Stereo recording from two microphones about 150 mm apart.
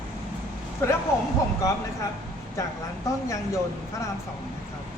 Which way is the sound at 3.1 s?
20° left (ahead or behind).